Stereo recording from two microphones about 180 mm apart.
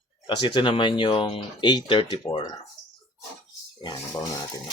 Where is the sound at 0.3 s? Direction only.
25° left (ahead or behind).